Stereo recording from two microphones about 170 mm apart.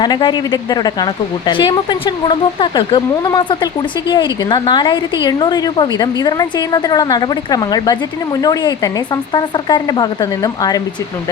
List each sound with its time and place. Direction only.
0.0 s a woman's voice: 25° left (ahead or behind)